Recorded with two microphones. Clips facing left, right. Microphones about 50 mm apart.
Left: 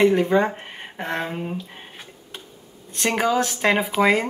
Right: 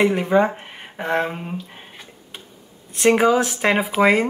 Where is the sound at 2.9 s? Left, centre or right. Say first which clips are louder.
Right 5 dB; right.